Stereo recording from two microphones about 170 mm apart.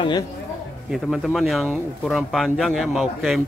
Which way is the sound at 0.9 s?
Centre (ahead or behind).